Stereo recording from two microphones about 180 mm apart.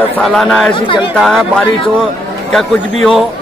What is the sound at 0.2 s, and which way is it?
A man's voice, centre (ahead or behind).